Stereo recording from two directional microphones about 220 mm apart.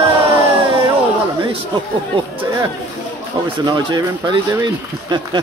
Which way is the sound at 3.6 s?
20° right (ahead or behind).